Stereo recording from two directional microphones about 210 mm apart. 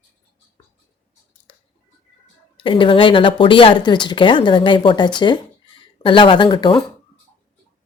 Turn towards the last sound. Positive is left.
turn(degrees=20)  # may be behind; listen again after turning